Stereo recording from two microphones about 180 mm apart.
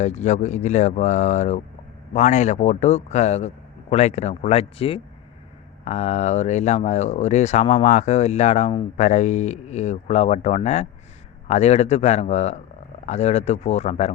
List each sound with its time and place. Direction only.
0.0 s speech: 40° left (ahead or behind)